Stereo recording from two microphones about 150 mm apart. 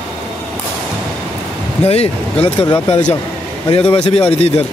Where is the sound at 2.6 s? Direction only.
35° left (ahead or behind).